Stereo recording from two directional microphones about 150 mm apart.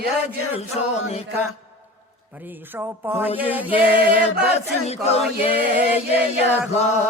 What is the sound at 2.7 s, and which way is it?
Speech, 15° right (ahead or behind).